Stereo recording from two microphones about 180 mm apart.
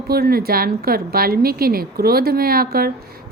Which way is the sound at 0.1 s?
60° right (ahead or behind).